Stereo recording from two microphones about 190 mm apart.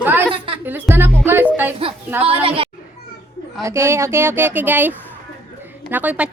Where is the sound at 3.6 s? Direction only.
15° right (ahead or behind).